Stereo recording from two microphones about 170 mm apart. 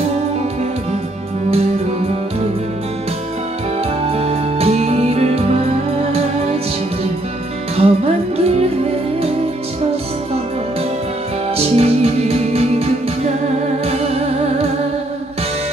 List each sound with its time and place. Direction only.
4.1 s music: 35° right (ahead or behind)
7.7 s music: 35° right (ahead or behind)
11.5 s music: 40° right (ahead or behind)